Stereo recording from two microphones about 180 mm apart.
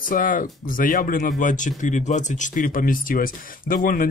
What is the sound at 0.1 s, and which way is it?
Speech, 50° left (ahead or behind).